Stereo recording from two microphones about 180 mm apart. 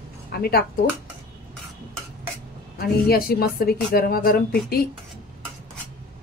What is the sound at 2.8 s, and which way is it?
Speech, 55° left (ahead or behind).